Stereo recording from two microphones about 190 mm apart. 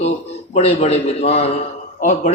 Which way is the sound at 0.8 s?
35° left (ahead or behind).